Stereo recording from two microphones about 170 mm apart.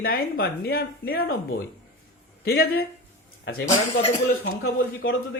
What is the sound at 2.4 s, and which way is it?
Speech, 60° left (ahead or behind).